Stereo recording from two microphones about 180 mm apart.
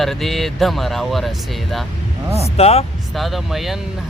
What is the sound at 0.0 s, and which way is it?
Speech, centre (ahead or behind).